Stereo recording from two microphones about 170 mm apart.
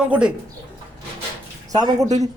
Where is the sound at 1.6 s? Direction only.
20° right (ahead or behind).